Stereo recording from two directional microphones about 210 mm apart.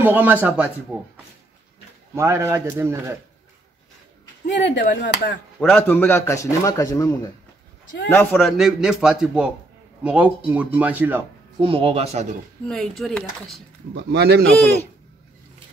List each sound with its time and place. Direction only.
0.0 s speech: 10° right (ahead or behind)
2.1 s speech: 15° right (ahead or behind)
4.5 s speech: 55° left (ahead or behind)
5.6 s a man's voice: 5° left (ahead or behind)
11.6 s speech: 25° right (ahead or behind)
12.6 s a man's voice: 5° left (ahead or behind)
13.9 s a man's voice: 50° right (ahead or behind)